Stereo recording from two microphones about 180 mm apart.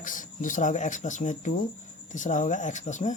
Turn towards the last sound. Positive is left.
turn(degrees=40)  # may be behind; listen again after turning